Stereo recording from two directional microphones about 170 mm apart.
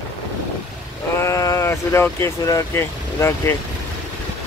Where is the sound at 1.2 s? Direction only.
20° left (ahead or behind).